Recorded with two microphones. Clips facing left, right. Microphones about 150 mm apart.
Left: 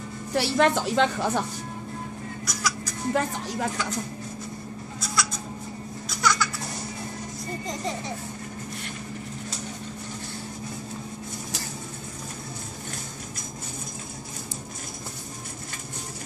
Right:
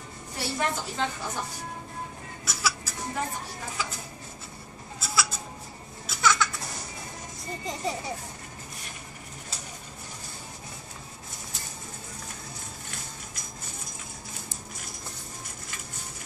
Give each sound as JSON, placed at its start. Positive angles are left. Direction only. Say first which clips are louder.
{"t": 0.3, "sound": "a woman's voice", "louder": "left 9 dB", "side_deg": 85}
{"t": 2.4, "sound": "music", "louder": "even", "side_deg": -5}
{"t": 3.1, "sound": "a woman's voice", "louder": "left 7 dB", "side_deg": 90}
{"t": 5.0, "sound": "a sound", "louder": "even", "side_deg": -5}
{"t": 6.0, "sound": "baby laughter", "louder": "even", "side_deg": 0}